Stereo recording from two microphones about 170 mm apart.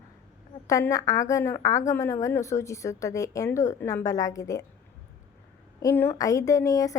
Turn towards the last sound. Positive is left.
turn(degrees=20)  # may be behind; listen again after turning